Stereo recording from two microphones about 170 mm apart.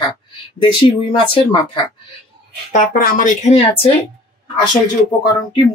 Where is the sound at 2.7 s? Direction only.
55° left (ahead or behind).